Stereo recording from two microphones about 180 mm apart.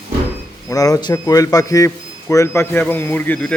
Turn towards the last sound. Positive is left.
turn(degrees=5)  # may be behind; listen again after turning